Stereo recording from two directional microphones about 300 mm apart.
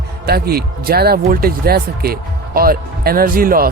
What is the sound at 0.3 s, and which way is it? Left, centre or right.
Speech, right.